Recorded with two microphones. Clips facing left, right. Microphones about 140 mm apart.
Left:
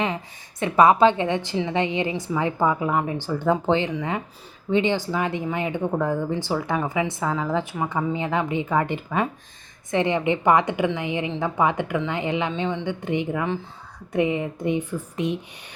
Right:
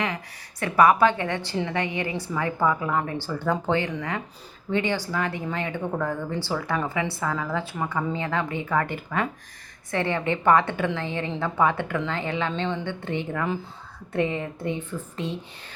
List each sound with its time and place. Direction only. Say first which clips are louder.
0.6 s a woman's voice: left 2 dB; 20° left (ahead or behind)